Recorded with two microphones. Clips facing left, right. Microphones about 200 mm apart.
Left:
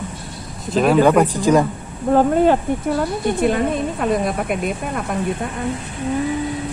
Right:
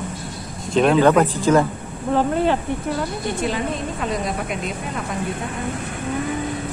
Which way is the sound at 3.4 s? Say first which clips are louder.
Left 6 dB; 55° left (ahead or behind).